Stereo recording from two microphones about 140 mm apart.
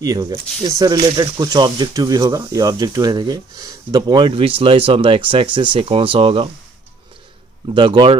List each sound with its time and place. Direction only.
0.0 s speech: 25° right (ahead or behind)
7.7 s a man's voice: 35° right (ahead or behind)